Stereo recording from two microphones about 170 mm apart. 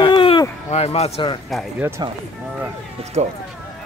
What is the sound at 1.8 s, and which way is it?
Speech, 15° right (ahead or behind).